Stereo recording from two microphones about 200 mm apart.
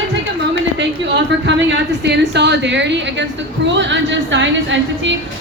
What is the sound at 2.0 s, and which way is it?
A woman's voice, 60° right (ahead or behind).